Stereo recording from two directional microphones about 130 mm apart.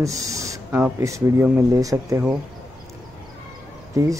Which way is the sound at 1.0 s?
25° right (ahead or behind).